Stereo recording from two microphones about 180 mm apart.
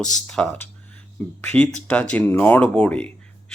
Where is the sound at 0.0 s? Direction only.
5° left (ahead or behind).